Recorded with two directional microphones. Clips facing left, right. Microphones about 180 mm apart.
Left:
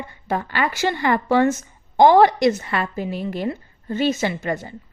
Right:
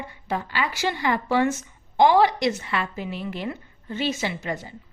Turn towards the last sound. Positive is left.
turn(degrees=50)  # may be behind; listen again after turning